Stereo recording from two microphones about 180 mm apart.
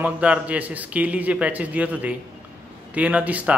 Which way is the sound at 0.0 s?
5° right (ahead or behind).